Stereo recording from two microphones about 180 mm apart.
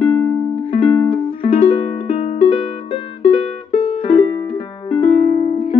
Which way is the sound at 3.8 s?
30° left (ahead or behind).